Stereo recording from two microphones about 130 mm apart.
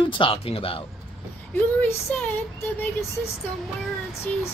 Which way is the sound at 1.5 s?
10° left (ahead or behind).